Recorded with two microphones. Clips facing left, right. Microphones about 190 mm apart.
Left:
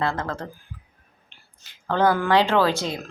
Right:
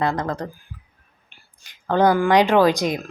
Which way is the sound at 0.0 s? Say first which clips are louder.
Right 3 dB; 15° right (ahead or behind).